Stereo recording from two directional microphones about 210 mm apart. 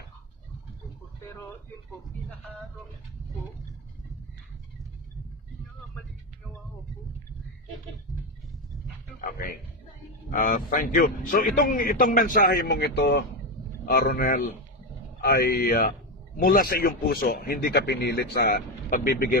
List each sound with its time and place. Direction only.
9.2 s a man's voice: 40° left (ahead or behind)
13.9 s a man's voice: 45° left (ahead or behind)